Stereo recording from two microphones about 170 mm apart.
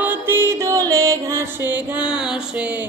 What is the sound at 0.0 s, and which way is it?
Music, 10° right (ahead or behind).